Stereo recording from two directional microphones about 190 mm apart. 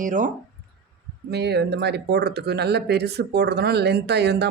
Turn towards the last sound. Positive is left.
turn(degrees=-60)  # may be behind; listen again after turning